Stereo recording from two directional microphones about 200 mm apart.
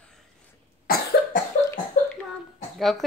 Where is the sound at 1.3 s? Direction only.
40° left (ahead or behind).